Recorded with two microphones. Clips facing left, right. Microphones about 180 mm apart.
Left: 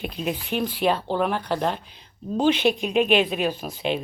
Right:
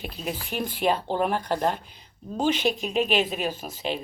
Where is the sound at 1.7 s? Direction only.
50° right (ahead or behind).